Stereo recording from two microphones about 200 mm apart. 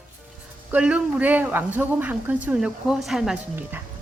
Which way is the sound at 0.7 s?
5° right (ahead or behind).